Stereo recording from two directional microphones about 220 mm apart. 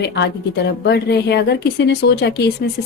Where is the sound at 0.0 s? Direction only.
50° left (ahead or behind).